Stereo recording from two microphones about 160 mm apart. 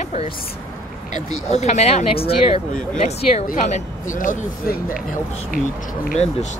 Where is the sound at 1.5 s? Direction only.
45° left (ahead or behind).